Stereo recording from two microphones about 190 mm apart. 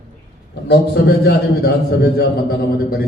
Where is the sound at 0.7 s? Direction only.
55° left (ahead or behind).